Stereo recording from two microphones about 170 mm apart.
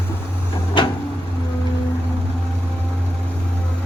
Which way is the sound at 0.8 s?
30° left (ahead or behind).